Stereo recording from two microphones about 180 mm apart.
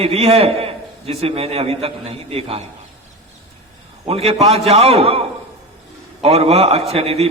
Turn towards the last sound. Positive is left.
turn(degrees=-35)  # may be behind; listen again after turning